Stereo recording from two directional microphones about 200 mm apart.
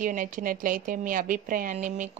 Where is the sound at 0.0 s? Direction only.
40° right (ahead or behind).